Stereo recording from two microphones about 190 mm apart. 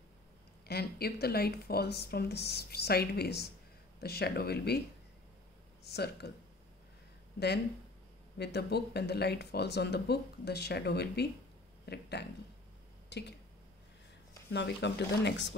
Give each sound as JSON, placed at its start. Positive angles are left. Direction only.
{"t": 0.7, "sound": "speech", "side_deg": 55}
{"t": 5.9, "sound": "speech", "side_deg": 60}
{"t": 7.3, "sound": "speech", "side_deg": 60}
{"t": 14.5, "sound": "speech", "side_deg": 65}